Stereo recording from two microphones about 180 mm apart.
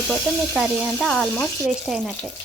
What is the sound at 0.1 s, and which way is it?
Speech, centre (ahead or behind).